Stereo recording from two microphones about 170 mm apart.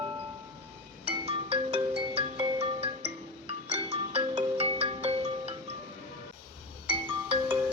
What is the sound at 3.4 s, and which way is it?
Ringtone, 35° right (ahead or behind).